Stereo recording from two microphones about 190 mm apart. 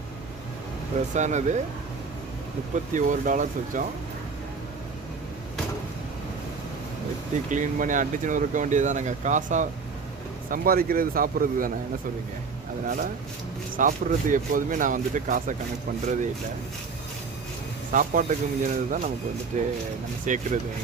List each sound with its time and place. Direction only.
1.1 s speech: 40° right (ahead or behind)
2.7 s speech: 40° right (ahead or behind)
7.5 s speech: 40° right (ahead or behind)
10.5 s speech: 50° right (ahead or behind)
13.7 s speech: 45° right (ahead or behind)
17.9 s speech: 45° right (ahead or behind)